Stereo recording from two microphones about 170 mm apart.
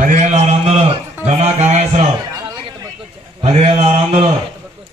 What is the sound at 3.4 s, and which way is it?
Speech, 40° right (ahead or behind).